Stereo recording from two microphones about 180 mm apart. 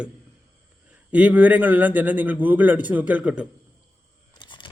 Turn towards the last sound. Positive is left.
turn(degrees=25)  # may be behind; listen again after turning